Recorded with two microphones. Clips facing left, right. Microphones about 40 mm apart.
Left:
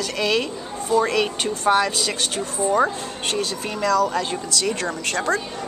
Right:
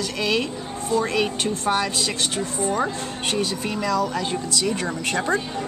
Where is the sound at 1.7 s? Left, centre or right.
Centre.